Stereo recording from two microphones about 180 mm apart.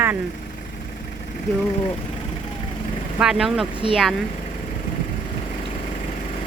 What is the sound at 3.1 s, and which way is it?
Speech, 5° right (ahead or behind).